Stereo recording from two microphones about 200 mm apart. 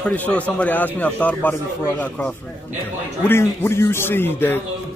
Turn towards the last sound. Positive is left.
turn(degrees=10)  # may be behind; listen again after turning